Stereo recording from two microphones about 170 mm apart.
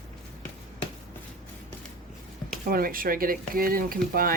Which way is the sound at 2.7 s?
60° right (ahead or behind).